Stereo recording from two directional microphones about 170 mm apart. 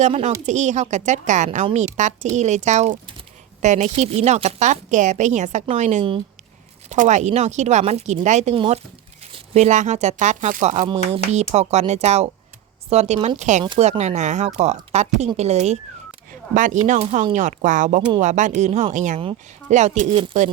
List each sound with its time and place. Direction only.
0.0 s speech: 40° right (ahead or behind)
8.5 s speech: 30° right (ahead or behind); by 10.8 s 45° right (ahead or behind)
10.8 s speech: 35° right (ahead or behind)